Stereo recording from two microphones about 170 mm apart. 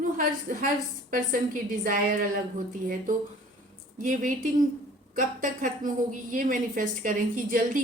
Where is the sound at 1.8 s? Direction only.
55° right (ahead or behind).